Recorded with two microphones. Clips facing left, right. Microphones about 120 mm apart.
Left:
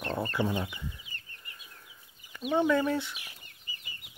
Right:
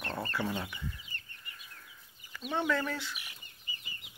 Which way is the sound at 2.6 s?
20° left (ahead or behind).